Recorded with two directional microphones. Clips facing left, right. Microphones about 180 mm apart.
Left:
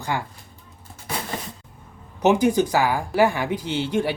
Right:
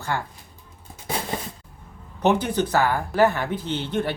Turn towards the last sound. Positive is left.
turn(degrees=10)  # may be behind; listen again after turning